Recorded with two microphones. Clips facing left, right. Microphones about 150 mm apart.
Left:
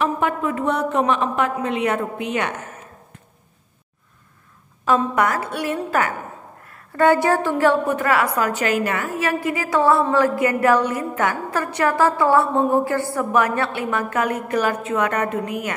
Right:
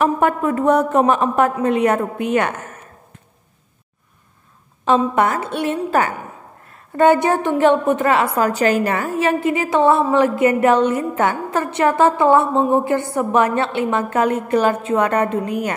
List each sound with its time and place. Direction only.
0.0 s a woman's voice: 45° right (ahead or behind)
4.8 s a woman's voice: 25° right (ahead or behind)